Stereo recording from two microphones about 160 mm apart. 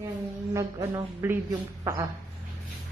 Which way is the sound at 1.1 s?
15° right (ahead or behind).